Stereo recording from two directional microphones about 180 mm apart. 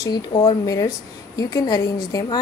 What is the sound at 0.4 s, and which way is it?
A woman's voice, 20° left (ahead or behind).